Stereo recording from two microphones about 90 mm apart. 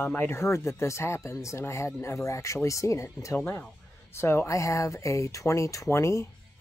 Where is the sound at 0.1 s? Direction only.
20° left (ahead or behind).